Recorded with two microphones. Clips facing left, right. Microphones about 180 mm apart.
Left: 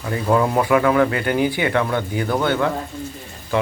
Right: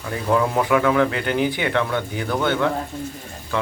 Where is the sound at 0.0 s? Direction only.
5° left (ahead or behind).